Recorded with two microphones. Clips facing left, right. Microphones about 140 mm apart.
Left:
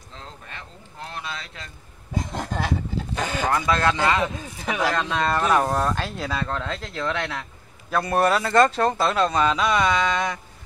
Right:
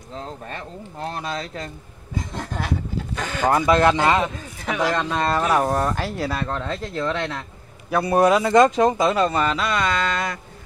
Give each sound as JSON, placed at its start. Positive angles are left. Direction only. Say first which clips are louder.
{"t": 0.5, "sound": "speech", "louder": "right 8 dB", "side_deg": -40}
{"t": 3.2, "sound": "speech", "louder": "left 2 dB", "side_deg": 10}
{"t": 3.4, "sound": "speech", "louder": "right 6 dB", "side_deg": -25}
{"t": 4.6, "sound": "speech", "louder": "right 2 dB", "side_deg": 5}
{"t": 5.1, "sound": "speech", "louder": "left 1 dB", "side_deg": -10}